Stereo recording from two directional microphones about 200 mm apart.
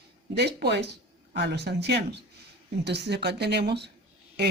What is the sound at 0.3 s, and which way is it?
Speech, 55° right (ahead or behind).